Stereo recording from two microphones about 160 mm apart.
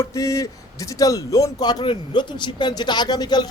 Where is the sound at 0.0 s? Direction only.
20° left (ahead or behind).